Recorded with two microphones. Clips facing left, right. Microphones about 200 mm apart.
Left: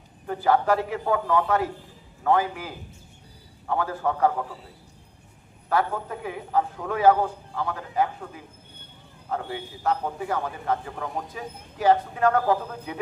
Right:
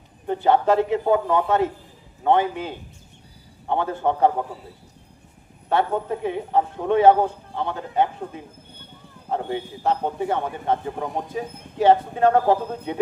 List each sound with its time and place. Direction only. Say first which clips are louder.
0.3 s a man's voice: right 3 dB; 25° right (ahead or behind)
5.6 s a man's voice: right 4 dB; 25° right (ahead or behind)